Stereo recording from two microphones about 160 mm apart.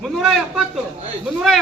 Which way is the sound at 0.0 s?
Centre (ahead or behind).